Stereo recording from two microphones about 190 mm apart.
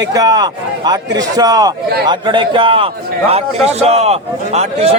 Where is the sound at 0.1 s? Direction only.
20° right (ahead or behind).